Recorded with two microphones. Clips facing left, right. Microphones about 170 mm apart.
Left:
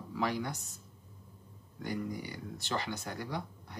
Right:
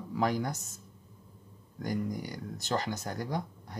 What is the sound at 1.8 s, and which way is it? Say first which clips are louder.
Speech: right 3 dB; 45° right (ahead or behind).